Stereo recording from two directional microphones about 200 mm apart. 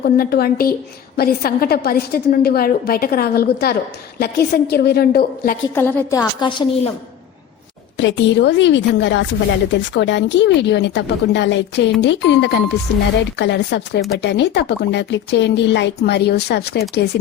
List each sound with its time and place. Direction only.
0.0 s a woman's voice: 50° left (ahead or behind)
5.7 s a woman's voice: 10° left (ahead or behind)
6.4 s a woman's voice: 25° left (ahead or behind)
7.9 s a woman's voice: 60° left (ahead or behind)